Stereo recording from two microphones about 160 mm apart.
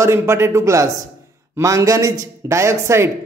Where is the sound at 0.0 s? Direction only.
15° right (ahead or behind).